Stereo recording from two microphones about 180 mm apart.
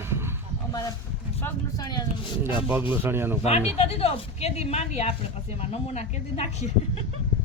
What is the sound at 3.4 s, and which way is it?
A woman's voice, 35° left (ahead or behind).